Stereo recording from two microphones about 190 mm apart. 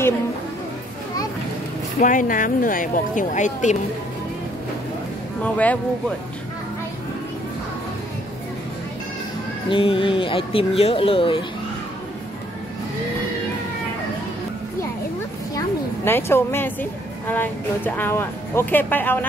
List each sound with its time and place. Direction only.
2.0 s speech: 45° left (ahead or behind)
5.4 s speech: 10° left (ahead or behind)
9.7 s speech: 30° left (ahead or behind)
15.5 s a sound: 10° left (ahead or behind)
17.3 s speech: 10° left (ahead or behind)